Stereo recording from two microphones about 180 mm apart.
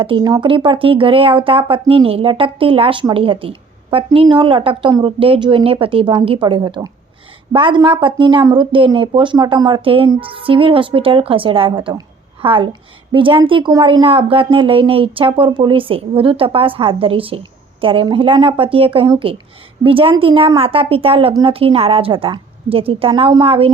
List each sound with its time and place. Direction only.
0.0 s speech: 25° right (ahead or behind)